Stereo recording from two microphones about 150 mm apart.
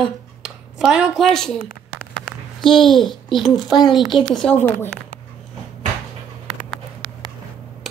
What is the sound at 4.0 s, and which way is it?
A child's voice, centre (ahead or behind).